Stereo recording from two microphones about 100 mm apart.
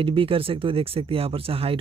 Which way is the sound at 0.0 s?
65° right (ahead or behind).